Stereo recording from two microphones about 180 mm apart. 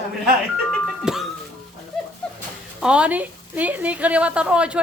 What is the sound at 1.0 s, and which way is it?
Music, centre (ahead or behind).